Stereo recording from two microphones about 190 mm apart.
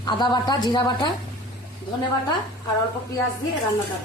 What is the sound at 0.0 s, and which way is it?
A woman's voice, 20° left (ahead or behind).